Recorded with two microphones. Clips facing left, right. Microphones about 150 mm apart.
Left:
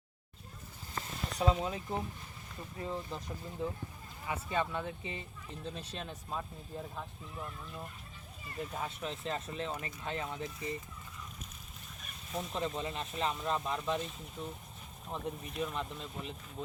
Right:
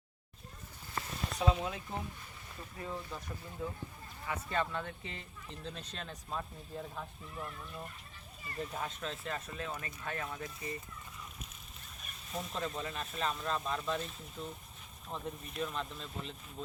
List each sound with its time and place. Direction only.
1.4 s speech: 25° left (ahead or behind)
9.2 s speech: 25° left (ahead or behind)
12.3 s speech: 20° left (ahead or behind)